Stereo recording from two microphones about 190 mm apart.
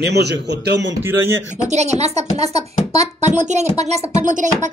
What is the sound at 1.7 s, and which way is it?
Speech, 35° right (ahead or behind).